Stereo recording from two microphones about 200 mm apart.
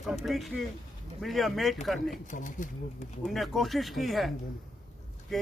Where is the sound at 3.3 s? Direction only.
Centre (ahead or behind).